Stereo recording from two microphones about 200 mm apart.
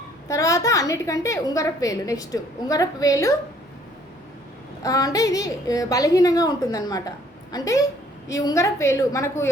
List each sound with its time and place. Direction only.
0.3 s a woman's voice: 15° left (ahead or behind)
4.8 s a woman's voice: 15° left (ahead or behind)